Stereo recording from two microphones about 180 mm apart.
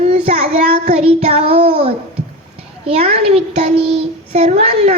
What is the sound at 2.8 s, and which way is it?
Speech, 35° right (ahead or behind).